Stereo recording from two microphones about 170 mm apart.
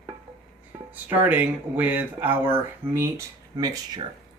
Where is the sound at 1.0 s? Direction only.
10° right (ahead or behind).